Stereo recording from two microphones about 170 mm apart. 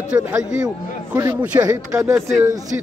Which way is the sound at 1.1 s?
15° right (ahead or behind).